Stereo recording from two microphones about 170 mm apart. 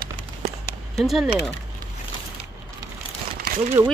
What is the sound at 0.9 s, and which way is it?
Speech, centre (ahead or behind).